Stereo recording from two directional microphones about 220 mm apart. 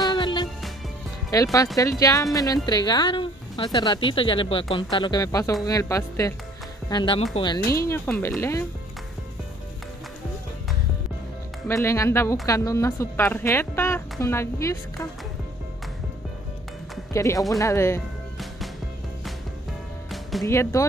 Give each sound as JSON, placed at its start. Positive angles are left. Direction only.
{"t": 0.0, "sound": "music", "side_deg": 20}
{"t": 1.3, "sound": "a woman's voice", "side_deg": 15}
{"t": 11.6, "sound": "a woman's voice", "side_deg": 10}
{"t": 17.1, "sound": "a woman's voice", "side_deg": 15}
{"t": 20.1, "sound": "music", "side_deg": 0}
{"t": 20.4, "sound": "a woman's voice", "side_deg": 10}